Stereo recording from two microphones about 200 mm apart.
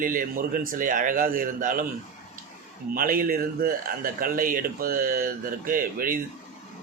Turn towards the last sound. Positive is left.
turn(degrees=-45)  # may be behind; listen again after turning